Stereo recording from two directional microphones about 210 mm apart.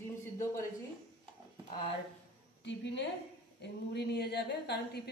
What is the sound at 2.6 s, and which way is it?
A woman's voice, 55° left (ahead or behind).